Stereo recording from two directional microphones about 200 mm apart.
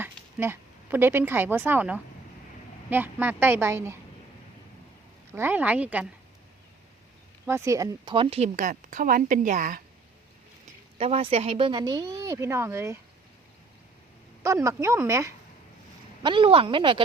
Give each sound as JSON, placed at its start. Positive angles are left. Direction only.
{"t": 0.0, "sound": "a woman's voice", "side_deg": -10}
{"t": 5.3, "sound": "a woman's voice", "side_deg": -10}
{"t": 7.4, "sound": "a woman's voice", "side_deg": -15}
{"t": 10.9, "sound": "speech", "side_deg": -30}
{"t": 14.4, "sound": "a woman's voice", "side_deg": -15}
{"t": 16.2, "sound": "speech", "side_deg": -25}